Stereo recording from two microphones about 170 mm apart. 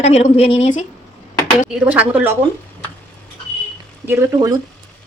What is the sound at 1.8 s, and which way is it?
Speech, 10° right (ahead or behind).